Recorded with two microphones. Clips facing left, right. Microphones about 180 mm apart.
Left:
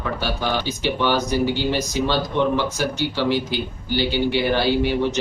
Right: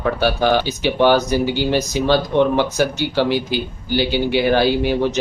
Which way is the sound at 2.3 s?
60° right (ahead or behind).